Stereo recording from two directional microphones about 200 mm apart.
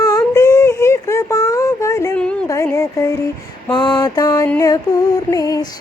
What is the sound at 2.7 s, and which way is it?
Speech, 15° left (ahead or behind).